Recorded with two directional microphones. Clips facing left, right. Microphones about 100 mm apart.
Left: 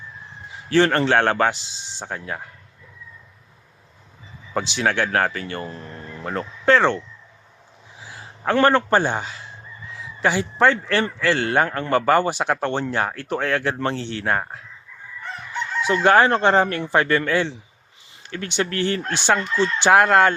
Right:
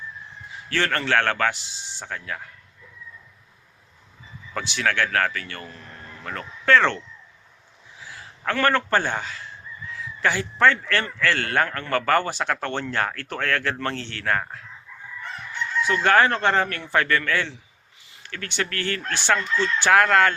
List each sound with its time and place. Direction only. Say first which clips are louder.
0.7 s speech: left 6 dB; 25° left (ahead or behind)
4.5 s speech: left 3 dB; 20° left (ahead or behind)
15.8 s speech: left 3 dB; 20° left (ahead or behind)